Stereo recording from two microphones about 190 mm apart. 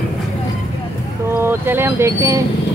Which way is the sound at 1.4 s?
10° right (ahead or behind).